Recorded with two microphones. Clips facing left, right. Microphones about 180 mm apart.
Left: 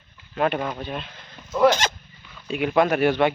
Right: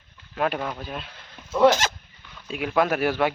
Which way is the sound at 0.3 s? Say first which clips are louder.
Left 2 dB; centre (ahead or behind).